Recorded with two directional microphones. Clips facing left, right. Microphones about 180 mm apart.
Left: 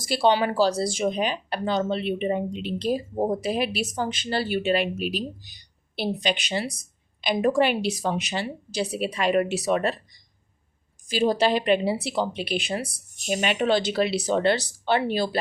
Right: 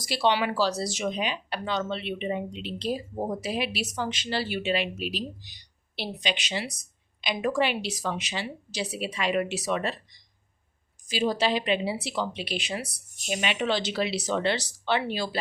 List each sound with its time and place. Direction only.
0.1 s a woman's voice: 45° left (ahead or behind)
11.1 s speech: 50° left (ahead or behind)